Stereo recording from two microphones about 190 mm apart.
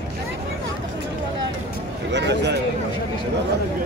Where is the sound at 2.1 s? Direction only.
65° right (ahead or behind).